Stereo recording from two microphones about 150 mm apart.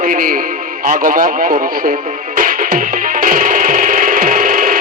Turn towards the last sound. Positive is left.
turn(degrees=-65)  # may be behind; listen again after turning